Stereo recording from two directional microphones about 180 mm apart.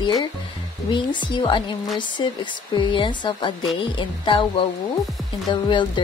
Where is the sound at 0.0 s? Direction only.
25° left (ahead or behind).